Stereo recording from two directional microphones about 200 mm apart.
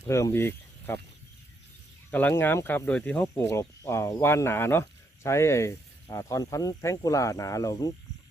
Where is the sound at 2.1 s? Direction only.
10° left (ahead or behind).